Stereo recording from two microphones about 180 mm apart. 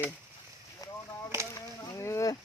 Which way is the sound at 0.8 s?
20° left (ahead or behind).